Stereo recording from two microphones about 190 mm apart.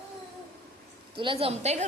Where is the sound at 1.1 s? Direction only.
25° right (ahead or behind).